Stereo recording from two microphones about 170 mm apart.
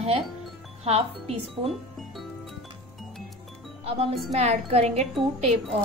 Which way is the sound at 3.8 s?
35° right (ahead or behind).